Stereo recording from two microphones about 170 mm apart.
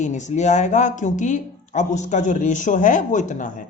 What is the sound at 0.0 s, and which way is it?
Speech, 45° left (ahead or behind).